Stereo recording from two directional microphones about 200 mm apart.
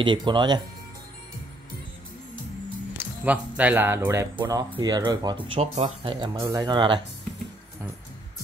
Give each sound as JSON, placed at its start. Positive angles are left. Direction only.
{"t": 0.0, "sound": "speech", "side_deg": -25}
{"t": 3.0, "sound": "speech", "side_deg": -10}
{"t": 6.4, "sound": "speech", "side_deg": -20}